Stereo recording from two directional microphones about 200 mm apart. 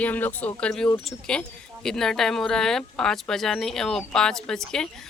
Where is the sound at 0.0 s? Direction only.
10° left (ahead or behind).